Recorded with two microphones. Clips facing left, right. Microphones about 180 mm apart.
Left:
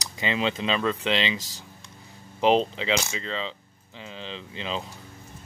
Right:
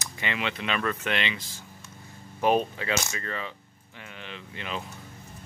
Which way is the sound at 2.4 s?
20° left (ahead or behind).